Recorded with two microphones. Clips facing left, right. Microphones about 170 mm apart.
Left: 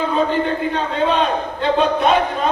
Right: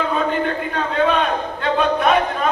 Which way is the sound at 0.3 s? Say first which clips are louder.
Left 2 dB; 30° left (ahead or behind).